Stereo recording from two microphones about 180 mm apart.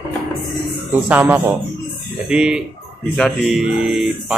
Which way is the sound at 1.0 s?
10° right (ahead or behind).